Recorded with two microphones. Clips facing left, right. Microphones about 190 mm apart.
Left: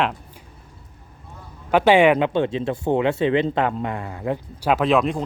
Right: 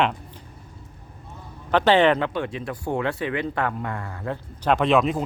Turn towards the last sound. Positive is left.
turn(degrees=0)  # may be behind; listen again after turning